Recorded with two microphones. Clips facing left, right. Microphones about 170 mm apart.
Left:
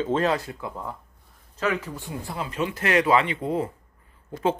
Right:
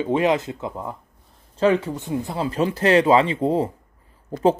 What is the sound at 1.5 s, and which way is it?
Speech, 30° right (ahead or behind).